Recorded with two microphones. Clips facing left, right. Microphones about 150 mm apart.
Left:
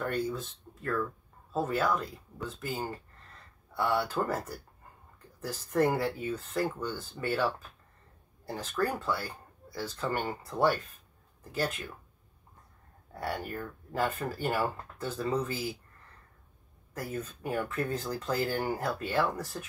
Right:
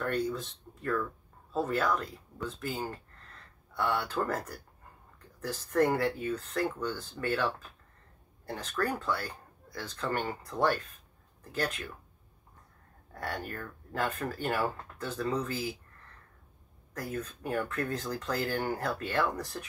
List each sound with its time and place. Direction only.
0.0 s speech: 5° left (ahead or behind)
13.1 s speech: 10° left (ahead or behind)
16.9 s speech: 5° left (ahead or behind)